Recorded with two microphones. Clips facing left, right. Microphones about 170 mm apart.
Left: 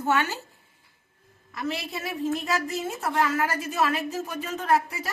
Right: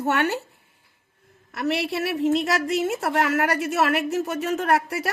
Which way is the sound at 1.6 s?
70° right (ahead or behind).